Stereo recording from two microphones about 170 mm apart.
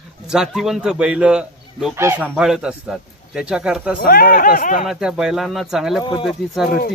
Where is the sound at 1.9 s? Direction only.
15° right (ahead or behind).